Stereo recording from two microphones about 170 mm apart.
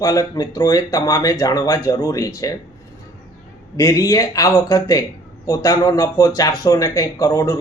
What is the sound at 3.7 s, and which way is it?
Speech, 20° left (ahead or behind).